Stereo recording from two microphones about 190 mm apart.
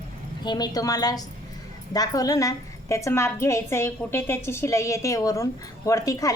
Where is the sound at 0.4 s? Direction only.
20° left (ahead or behind).